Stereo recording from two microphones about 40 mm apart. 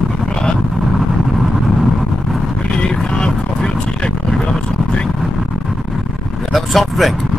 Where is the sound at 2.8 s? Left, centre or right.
Centre.